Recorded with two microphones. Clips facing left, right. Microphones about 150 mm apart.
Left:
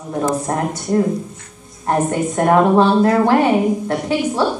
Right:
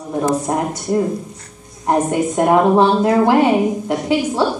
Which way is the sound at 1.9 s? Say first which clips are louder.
Right 1 dB; 15° right (ahead or behind).